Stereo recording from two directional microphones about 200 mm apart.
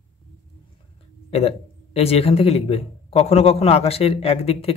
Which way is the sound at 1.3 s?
30° left (ahead or behind).